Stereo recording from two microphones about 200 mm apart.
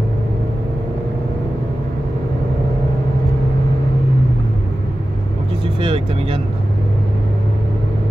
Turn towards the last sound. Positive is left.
turn(degrees=-25)  # may be behind; listen again after turning